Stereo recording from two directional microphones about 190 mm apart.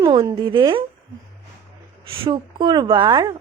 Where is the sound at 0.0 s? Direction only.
20° right (ahead or behind).